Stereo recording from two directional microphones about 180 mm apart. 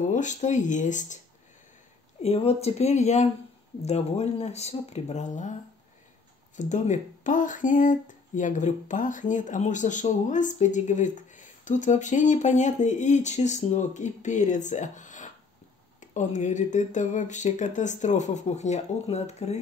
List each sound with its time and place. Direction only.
0.1 s speech: 45° left (ahead or behind)
2.2 s speech: 35° left (ahead or behind)